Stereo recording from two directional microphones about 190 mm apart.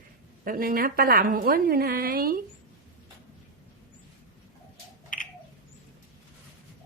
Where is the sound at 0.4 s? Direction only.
50° right (ahead or behind).